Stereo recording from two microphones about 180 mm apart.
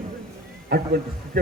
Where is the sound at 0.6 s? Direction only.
60° right (ahead or behind).